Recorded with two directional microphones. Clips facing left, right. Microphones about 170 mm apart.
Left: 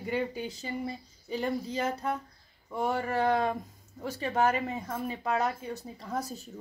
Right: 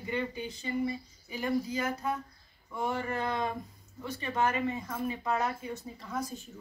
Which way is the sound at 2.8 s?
35° left (ahead or behind).